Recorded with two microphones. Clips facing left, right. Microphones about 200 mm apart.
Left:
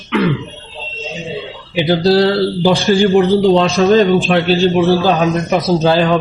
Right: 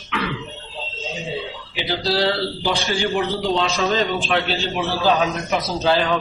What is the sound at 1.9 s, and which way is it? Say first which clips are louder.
A man's voice: left 9 dB; 50° left (ahead or behind).